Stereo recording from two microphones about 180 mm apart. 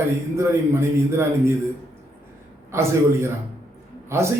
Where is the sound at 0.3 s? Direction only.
15° right (ahead or behind).